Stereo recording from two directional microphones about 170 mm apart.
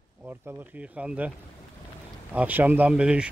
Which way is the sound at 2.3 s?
10° right (ahead or behind).